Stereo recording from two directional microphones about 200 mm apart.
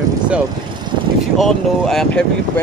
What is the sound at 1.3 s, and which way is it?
Music, centre (ahead or behind).